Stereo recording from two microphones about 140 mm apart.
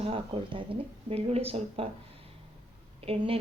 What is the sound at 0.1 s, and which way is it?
A woman's voice, 40° right (ahead or behind).